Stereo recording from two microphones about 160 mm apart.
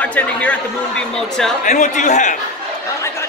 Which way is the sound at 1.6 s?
50° left (ahead or behind).